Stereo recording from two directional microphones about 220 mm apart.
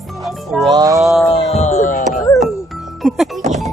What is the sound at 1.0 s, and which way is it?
Wild animals, centre (ahead or behind).